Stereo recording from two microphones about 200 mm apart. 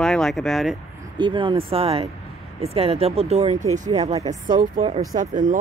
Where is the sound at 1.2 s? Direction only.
25° right (ahead or behind).